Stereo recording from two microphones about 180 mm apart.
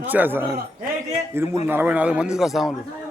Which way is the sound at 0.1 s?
10° right (ahead or behind).